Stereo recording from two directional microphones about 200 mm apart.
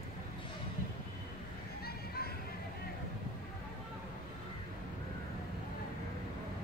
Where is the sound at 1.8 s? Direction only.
50° left (ahead or behind).